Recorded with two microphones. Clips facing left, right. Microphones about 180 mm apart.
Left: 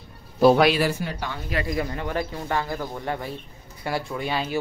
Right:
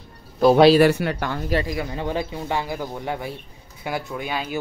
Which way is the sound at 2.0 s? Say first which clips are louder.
Right 2 dB; 20° right (ahead or behind).